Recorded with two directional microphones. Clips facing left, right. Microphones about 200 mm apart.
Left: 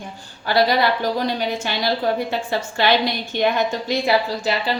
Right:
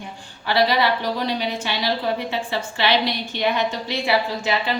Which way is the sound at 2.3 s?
45° left (ahead or behind).